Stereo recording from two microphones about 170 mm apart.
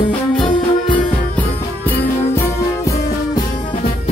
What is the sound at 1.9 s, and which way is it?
Music, 10° left (ahead or behind).